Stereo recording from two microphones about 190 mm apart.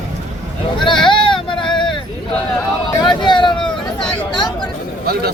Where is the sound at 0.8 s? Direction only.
25° left (ahead or behind).